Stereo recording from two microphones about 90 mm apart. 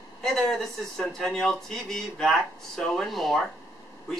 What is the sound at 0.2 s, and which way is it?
Speech, 5° left (ahead or behind).